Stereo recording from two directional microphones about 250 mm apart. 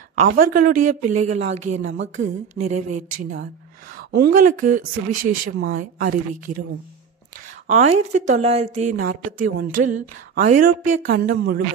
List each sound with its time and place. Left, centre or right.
0.1 s a woman's voice: right
1.8 s a sound: right
2.1 s a woman's voice: right
7.6 s a woman's voice: right